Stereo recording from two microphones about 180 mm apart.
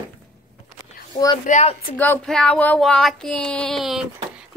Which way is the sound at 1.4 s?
40° left (ahead or behind).